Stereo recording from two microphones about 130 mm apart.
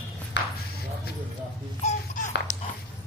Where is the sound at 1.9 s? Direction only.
70° left (ahead or behind).